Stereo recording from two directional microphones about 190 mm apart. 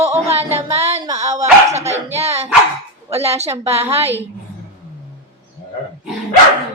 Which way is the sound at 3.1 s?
30° right (ahead or behind).